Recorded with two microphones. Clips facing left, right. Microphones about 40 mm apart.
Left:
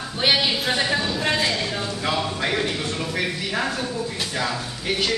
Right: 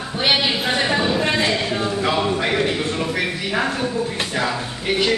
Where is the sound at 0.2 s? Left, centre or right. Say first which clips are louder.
Right 2 dB; centre.